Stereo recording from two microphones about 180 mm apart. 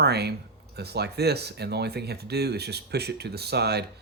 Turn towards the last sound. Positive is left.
turn(degrees=-65)  # may be behind; listen again after turning